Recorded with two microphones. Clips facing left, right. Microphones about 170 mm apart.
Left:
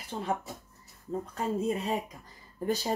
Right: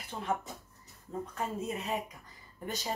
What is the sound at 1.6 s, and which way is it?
Speech, 30° left (ahead or behind).